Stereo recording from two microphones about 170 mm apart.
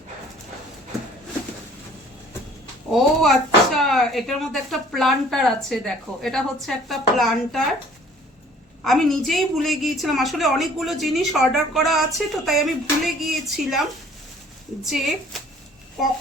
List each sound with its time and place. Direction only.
2.9 s a woman's voice: centre (ahead or behind)
8.8 s a woman's voice: centre (ahead or behind)
14.8 s a woman's voice: centre (ahead or behind)